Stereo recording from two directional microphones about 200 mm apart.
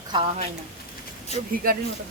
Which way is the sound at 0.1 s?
20° right (ahead or behind).